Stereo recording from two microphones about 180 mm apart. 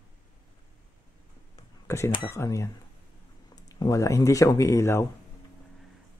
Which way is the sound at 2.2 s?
15° left (ahead or behind).